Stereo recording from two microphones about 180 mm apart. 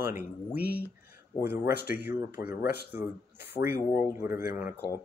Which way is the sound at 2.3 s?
60° left (ahead or behind).